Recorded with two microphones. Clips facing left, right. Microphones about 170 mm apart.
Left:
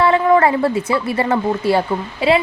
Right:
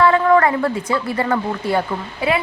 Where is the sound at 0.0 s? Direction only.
20° left (ahead or behind).